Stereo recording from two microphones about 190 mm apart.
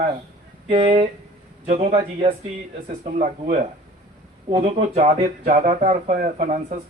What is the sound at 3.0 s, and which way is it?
Speech, 35° right (ahead or behind).